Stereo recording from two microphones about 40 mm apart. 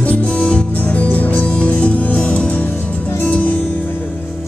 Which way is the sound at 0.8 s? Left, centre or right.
Left.